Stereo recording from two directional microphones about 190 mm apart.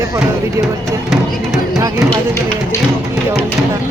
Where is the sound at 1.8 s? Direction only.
15° right (ahead or behind).